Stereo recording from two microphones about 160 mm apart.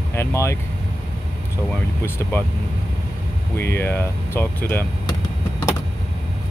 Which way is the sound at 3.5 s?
15° left (ahead or behind).